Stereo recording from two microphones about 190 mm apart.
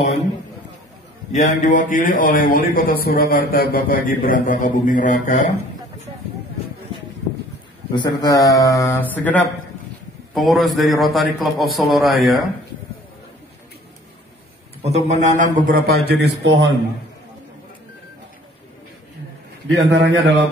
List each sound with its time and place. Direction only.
1.3 s speech: 40° left (ahead or behind)
7.9 s a man's voice: 20° left (ahead or behind); by 12.4 s centre (ahead or behind)
15.0 s a man's voice: 40° right (ahead or behind)
15.9 s a man's voice: 65° right (ahead or behind)
19.7 s a man's voice: 70° right (ahead or behind)